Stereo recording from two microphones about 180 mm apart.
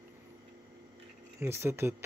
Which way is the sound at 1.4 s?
15° right (ahead or behind).